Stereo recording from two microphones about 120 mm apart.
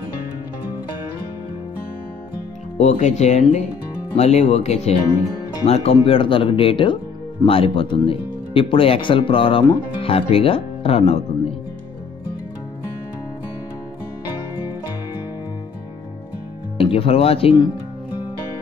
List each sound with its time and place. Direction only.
2.8 s speech: 75° left (ahead or behind)
6.0 s speech: 45° left (ahead or behind)
16.7 s speech: 55° left (ahead or behind)